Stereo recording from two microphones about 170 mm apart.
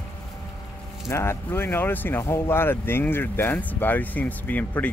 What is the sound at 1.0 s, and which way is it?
Speech, 15° left (ahead or behind).